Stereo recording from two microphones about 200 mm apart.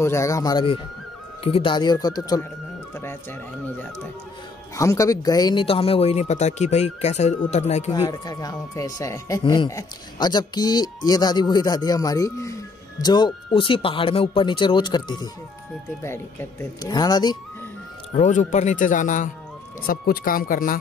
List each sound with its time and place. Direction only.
0.0 s speech: 15° left (ahead or behind)
2.9 s music: 10° left (ahead or behind)
4.7 s speech: 15° left (ahead or behind); by 7.9 s 35° left (ahead or behind)
7.9 s speech: 20° left (ahead or behind)
18.1 s speech: 35° left (ahead or behind)